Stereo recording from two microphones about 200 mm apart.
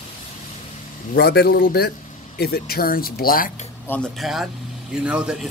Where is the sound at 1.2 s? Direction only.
50° left (ahead or behind).